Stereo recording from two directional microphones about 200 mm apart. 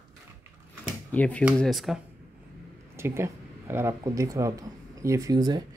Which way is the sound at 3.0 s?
10° right (ahead or behind).